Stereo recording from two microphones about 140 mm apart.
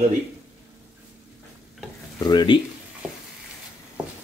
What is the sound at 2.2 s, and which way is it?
Speech, 30° left (ahead or behind).